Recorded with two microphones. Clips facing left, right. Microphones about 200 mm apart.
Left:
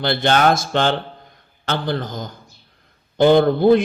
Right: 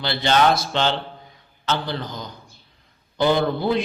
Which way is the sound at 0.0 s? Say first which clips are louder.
Left 2 dB; 55° left (ahead or behind).